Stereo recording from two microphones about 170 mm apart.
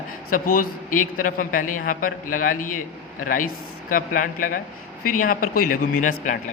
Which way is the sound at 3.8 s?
55° left (ahead or behind).